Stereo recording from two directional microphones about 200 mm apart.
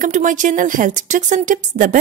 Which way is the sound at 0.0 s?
40° right (ahead or behind).